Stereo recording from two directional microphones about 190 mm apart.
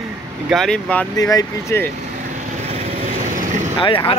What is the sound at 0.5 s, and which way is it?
Speech, centre (ahead or behind).